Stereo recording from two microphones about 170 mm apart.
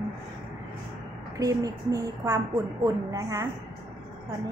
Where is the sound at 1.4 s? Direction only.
20° right (ahead or behind).